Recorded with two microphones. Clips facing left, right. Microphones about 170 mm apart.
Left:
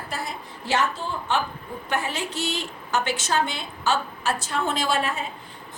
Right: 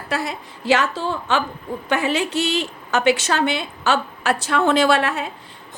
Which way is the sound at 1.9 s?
80° right.